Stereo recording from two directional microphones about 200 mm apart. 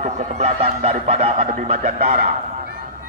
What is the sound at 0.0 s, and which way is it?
Speech, 30° right (ahead or behind).